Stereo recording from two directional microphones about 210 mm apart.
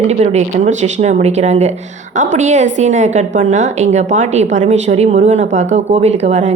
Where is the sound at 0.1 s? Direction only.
35° right (ahead or behind).